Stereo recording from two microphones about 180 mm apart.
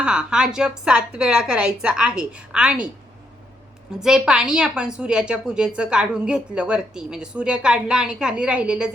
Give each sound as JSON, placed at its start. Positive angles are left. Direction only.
{"t": 0.0, "sound": "a woman's voice", "side_deg": -5}
{"t": 4.0, "sound": "a woman's voice", "side_deg": -5}